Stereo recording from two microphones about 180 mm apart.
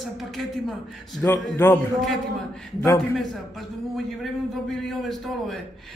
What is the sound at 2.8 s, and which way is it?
Speech, 20° left (ahead or behind).